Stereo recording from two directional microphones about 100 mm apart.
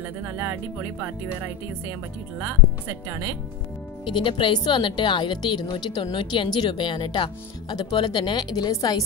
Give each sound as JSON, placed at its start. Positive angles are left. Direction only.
{"t": 0.2, "sound": "speech", "side_deg": -20}
{"t": 3.1, "sound": "speech", "side_deg": -35}
{"t": 4.0, "sound": "speech", "side_deg": 55}